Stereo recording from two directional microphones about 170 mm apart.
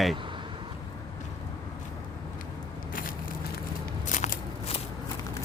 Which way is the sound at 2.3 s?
55° left (ahead or behind).